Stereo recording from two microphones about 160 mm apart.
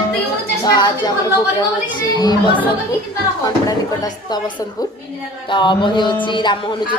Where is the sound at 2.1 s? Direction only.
25° left (ahead or behind).